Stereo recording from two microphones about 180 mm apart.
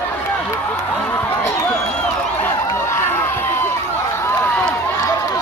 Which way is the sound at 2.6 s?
15° left (ahead or behind).